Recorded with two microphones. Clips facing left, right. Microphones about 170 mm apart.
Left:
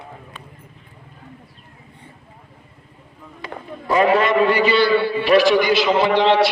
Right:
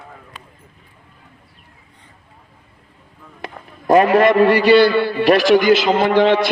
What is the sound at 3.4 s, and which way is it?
A man's voice, 45° right (ahead or behind).